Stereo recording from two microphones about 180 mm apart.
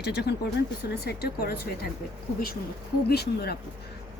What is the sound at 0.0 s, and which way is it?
Speech, 65° left (ahead or behind).